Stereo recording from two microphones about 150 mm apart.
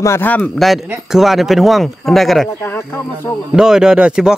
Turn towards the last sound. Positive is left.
turn(degrees=-5)  # may be behind; listen again after turning